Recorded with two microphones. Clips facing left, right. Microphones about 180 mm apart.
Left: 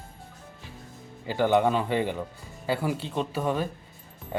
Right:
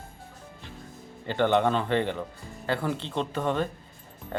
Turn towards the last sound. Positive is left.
turn(degrees=10)  # may be behind; listen again after turning